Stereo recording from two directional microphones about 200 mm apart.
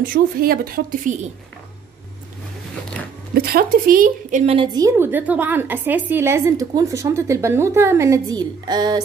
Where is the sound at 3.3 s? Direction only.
50° right (ahead or behind); by 9.0 s 20° right (ahead or behind).